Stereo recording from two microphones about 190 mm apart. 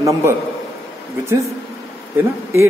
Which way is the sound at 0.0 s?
15° right (ahead or behind).